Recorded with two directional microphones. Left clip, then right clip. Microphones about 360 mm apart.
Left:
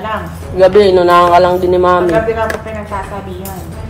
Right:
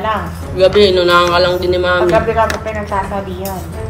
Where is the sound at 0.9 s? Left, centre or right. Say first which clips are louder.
Left 3 dB; left.